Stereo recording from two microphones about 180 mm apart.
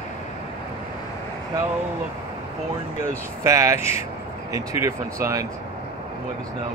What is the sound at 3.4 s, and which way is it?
Speech, 15° right (ahead or behind).